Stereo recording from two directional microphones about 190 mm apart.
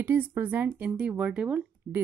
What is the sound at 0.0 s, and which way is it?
Speech, 10° right (ahead or behind).